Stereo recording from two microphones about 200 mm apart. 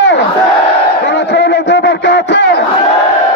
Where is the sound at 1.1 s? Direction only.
60° left (ahead or behind).